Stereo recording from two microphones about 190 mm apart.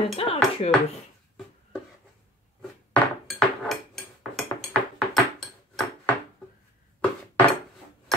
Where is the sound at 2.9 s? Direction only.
Centre (ahead or behind).